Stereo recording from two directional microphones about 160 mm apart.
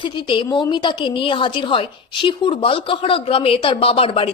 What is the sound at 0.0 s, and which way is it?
A woman's voice, 30° left (ahead or behind).